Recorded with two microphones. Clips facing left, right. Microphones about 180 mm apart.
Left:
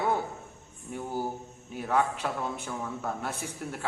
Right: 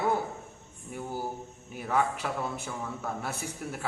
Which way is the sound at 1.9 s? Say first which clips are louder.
Left 1 dB; 10° right (ahead or behind).